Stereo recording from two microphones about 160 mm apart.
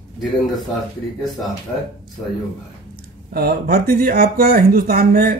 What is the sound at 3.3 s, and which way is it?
Speech, 75° right (ahead or behind).